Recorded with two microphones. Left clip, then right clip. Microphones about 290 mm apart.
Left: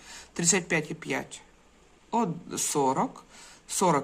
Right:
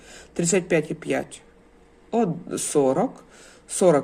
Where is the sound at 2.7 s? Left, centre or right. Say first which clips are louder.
Right 5 dB; centre.